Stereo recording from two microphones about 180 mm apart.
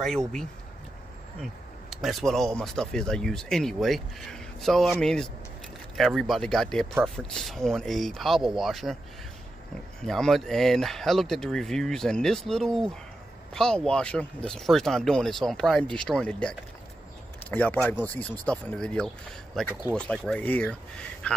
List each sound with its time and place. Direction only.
1.4 s speech: centre (ahead or behind)
10.0 s speech: centre (ahead or behind)